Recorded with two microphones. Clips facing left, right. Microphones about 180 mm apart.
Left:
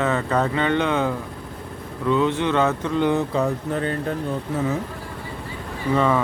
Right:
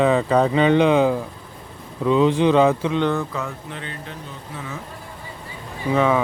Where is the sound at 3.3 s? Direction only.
35° left (ahead or behind).